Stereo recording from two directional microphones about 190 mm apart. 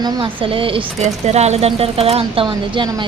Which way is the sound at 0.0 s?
25° right (ahead or behind).